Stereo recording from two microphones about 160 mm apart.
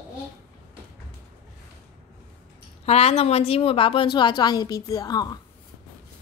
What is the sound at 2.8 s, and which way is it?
A woman's voice, 40° left (ahead or behind).